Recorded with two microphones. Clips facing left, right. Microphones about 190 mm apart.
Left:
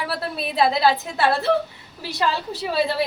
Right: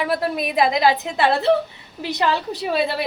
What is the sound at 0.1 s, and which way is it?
A woman's voice, 15° right (ahead or behind).